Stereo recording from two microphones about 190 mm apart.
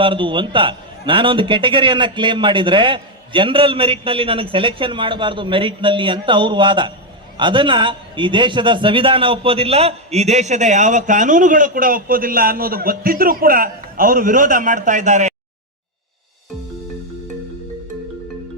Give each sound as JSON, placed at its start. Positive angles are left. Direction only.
{"t": 0.0, "sound": "a man's voice", "side_deg": -25}